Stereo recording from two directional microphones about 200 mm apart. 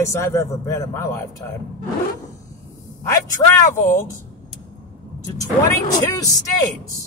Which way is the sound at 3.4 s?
20° left (ahead or behind).